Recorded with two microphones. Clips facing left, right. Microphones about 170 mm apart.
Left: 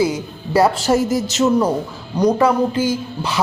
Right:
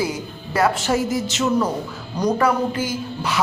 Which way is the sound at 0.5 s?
30° left (ahead or behind).